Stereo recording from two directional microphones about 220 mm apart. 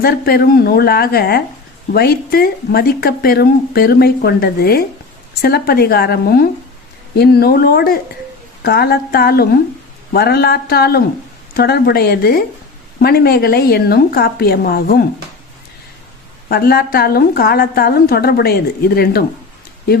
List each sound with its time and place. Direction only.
0.0 s speech: 45° left (ahead or behind)
16.5 s speech: 45° left (ahead or behind)